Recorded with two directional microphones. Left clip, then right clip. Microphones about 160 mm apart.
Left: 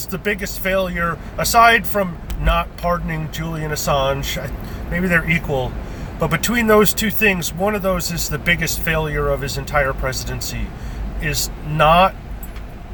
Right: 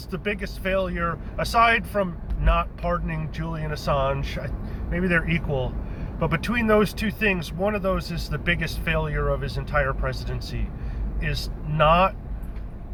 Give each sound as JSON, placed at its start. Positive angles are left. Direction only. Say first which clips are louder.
{"t": 0.1, "sound": "speech", "louder": "left 6 dB", "side_deg": 30}